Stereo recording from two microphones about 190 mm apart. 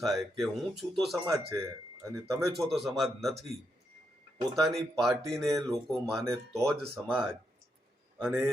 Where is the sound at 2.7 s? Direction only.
Centre (ahead or behind).